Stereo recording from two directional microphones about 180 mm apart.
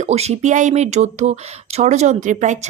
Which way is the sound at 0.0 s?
35° right (ahead or behind).